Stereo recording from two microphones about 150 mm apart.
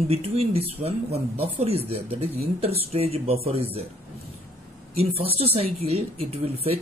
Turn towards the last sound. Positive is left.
turn(degrees=-40)  # may be behind; listen again after turning